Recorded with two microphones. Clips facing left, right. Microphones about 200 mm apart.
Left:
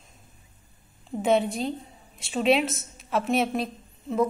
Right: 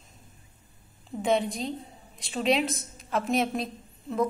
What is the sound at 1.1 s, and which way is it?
Speech, 45° left (ahead or behind).